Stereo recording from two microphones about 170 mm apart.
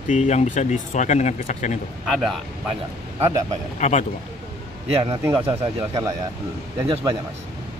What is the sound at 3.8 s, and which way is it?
Speech, 40° left (ahead or behind).